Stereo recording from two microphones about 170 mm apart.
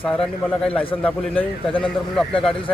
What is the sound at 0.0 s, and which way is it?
A man's voice, 5° left (ahead or behind).